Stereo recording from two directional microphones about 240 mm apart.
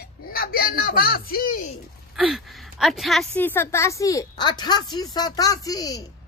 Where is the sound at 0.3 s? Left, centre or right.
Left.